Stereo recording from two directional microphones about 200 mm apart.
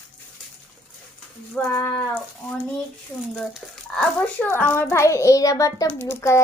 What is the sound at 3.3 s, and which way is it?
A child's voice, 5° left (ahead or behind).